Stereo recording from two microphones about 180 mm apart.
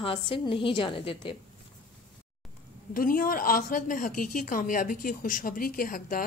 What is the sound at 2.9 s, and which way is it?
A woman's voice, 50° left (ahead or behind).